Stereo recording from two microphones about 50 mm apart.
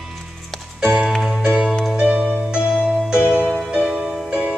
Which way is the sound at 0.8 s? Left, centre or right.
Centre.